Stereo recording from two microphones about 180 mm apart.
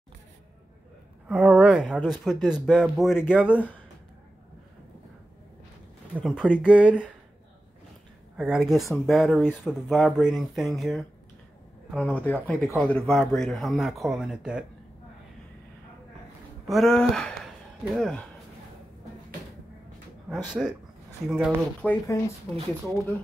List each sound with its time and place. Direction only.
1.3 s speech: 5° right (ahead or behind)
6.1 s speech: 5° right (ahead or behind)
8.4 s speech: 5° right (ahead or behind)
16.6 s speech: centre (ahead or behind)
20.6 s speech: 5° right (ahead or behind)
21.8 s speech: 15° left (ahead or behind)